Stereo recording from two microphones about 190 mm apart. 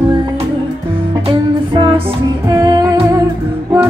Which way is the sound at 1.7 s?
25° right (ahead or behind).